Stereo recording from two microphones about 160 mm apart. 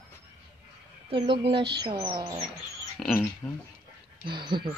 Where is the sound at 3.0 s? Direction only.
Centre (ahead or behind).